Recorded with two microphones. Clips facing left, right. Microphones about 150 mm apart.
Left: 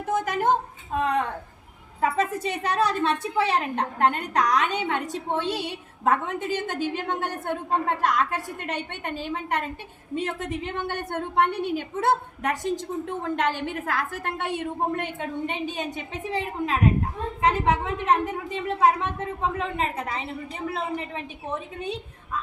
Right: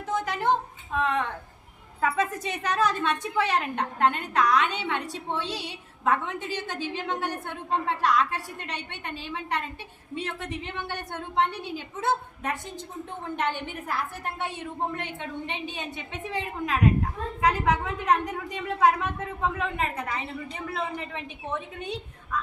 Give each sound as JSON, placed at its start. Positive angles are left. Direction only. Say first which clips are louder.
{"t": 0.0, "sound": "a sound", "louder": "left 3 dB", "side_deg": 45}
{"t": 0.9, "sound": "a woman's voice", "louder": "left 2 dB", "side_deg": 40}
{"t": 2.0, "sound": "a woman's voice", "louder": "left 2 dB", "side_deg": 30}
{"t": 13.2, "sound": "a woman's voice", "louder": "left 2 dB", "side_deg": 90}
{"t": 16.3, "sound": "a woman's voice", "louder": "left 3 dB", "side_deg": 30}